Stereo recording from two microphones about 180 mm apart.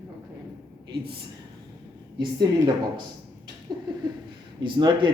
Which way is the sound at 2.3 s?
25° right (ahead or behind).